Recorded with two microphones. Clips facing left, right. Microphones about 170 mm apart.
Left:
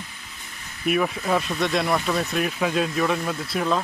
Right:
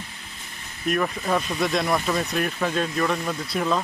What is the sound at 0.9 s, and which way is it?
Speech, 5° left (ahead or behind).